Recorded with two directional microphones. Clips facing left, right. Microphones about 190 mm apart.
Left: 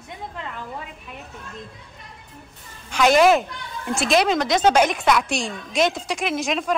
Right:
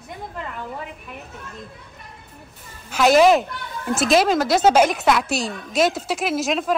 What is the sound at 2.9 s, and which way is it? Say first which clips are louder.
Speech: right 1 dB; centre (ahead or behind).